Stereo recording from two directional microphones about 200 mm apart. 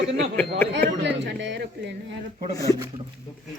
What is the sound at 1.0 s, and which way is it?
Speech, 60° right (ahead or behind).